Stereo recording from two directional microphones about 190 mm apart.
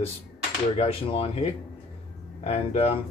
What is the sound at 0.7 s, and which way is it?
Speech, 30° left (ahead or behind).